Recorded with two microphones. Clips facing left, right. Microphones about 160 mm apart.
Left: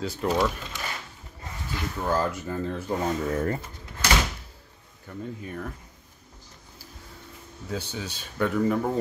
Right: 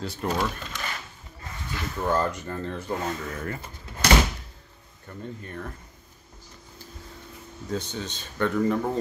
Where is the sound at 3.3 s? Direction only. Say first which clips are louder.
Left 7 dB; 35° left (ahead or behind).